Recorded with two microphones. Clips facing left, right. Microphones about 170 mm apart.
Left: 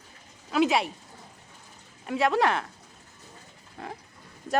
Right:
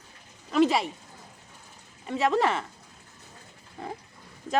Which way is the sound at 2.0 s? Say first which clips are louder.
Even; centre (ahead or behind).